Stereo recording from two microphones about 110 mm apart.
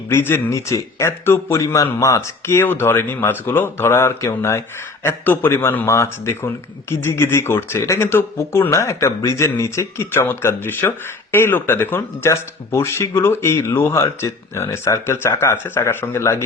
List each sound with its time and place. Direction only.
0.1 s speech: 20° left (ahead or behind)